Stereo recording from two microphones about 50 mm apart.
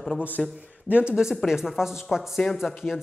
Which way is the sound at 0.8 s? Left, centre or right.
Right.